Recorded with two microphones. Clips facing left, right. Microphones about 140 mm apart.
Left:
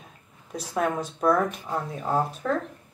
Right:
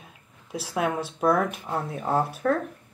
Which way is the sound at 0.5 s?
5° right (ahead or behind).